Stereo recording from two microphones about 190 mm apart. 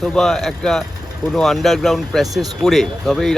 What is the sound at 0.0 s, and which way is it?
Speech, centre (ahead or behind).